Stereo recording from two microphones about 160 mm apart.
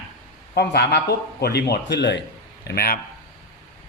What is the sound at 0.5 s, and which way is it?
Speech, 90° left.